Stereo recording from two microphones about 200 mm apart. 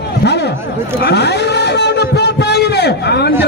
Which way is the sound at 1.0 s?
55° left (ahead or behind).